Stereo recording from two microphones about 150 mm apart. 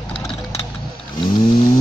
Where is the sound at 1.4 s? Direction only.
40° left (ahead or behind).